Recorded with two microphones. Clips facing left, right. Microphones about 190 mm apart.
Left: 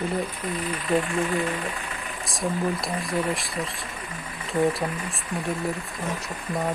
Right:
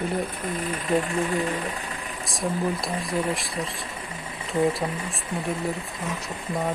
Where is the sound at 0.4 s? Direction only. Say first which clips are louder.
Even; 45° right (ahead or behind).